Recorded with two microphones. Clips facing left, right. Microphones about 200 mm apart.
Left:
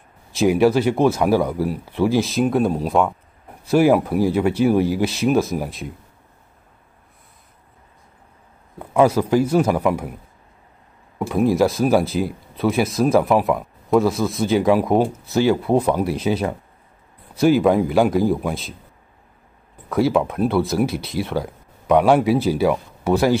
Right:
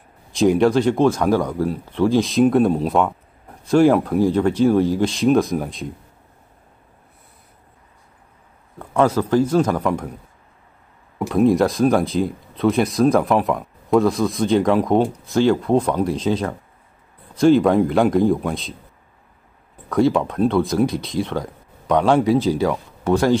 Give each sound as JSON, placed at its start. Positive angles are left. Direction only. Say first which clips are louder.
{"t": 0.4, "sound": "speech", "louder": "even", "side_deg": 5}
{"t": 8.7, "sound": "speech", "louder": "left 2 dB", "side_deg": 10}
{"t": 11.1, "sound": "speech", "louder": "right 2 dB", "side_deg": 0}
{"t": 19.9, "sound": "speech", "louder": "right 1 dB", "side_deg": 5}